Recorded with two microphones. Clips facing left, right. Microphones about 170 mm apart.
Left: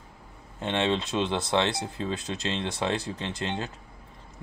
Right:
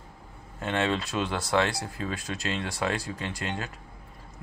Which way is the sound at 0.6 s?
20° left (ahead or behind).